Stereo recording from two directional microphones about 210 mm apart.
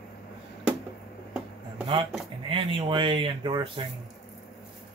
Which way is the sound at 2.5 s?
25° right (ahead or behind).